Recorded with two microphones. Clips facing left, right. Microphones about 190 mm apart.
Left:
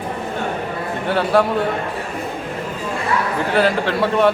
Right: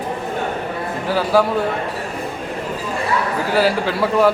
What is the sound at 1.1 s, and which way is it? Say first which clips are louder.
Speech: even; centre (ahead or behind).